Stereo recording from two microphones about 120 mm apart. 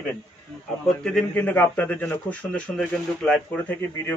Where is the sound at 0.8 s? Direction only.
5° left (ahead or behind).